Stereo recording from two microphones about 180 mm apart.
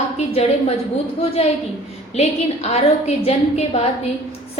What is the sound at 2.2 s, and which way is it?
A woman's voice, 35° left (ahead or behind).